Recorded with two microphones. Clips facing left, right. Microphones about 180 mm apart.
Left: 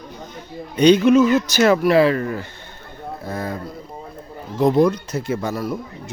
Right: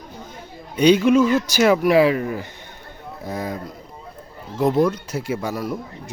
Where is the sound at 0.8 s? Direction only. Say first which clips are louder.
Left 2 dB; 10° right (ahead or behind).